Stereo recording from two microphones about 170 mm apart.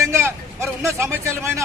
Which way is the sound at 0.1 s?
15° right (ahead or behind).